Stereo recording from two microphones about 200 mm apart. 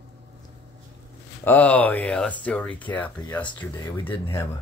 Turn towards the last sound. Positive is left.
turn(degrees=15)  # may be behind; listen again after turning